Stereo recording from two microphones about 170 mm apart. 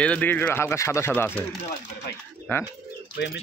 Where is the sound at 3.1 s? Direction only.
75° left (ahead or behind).